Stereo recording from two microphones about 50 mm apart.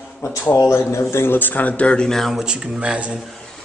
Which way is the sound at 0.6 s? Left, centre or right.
Left.